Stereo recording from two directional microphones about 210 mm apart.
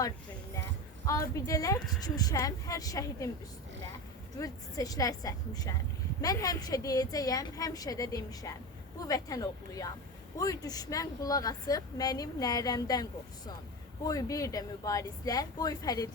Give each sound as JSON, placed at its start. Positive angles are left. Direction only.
{"t": 1.0, "sound": "a woman's voice", "side_deg": 15}
{"t": 4.4, "sound": "a woman's voice", "side_deg": 15}